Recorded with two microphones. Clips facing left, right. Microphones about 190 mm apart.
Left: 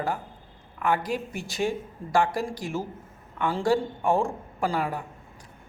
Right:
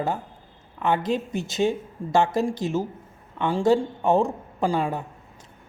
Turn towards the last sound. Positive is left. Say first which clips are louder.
# right 3 dB
turn(degrees=-25)  # may be behind; listen again after turning